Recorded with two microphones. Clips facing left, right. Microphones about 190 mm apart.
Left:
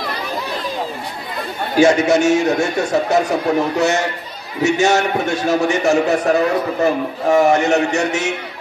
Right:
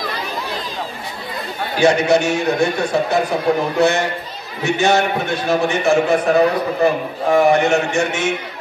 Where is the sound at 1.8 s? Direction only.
45° left (ahead or behind).